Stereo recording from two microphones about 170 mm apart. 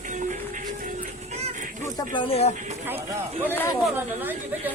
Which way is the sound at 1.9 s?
30° left (ahead or behind).